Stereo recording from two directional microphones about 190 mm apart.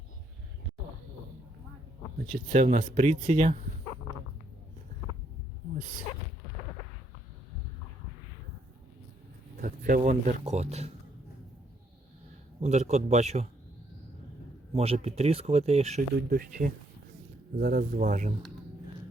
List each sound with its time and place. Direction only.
2.3 s speech: 35° right (ahead or behind)
9.6 s speech: 45° right (ahead or behind)
12.5 s speech: 35° right (ahead or behind)
14.7 s speech: 30° right (ahead or behind)
16.3 s speech: 45° right (ahead or behind)